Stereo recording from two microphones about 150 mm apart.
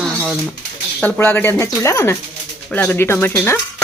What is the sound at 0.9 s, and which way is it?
Speech, 10° left (ahead or behind).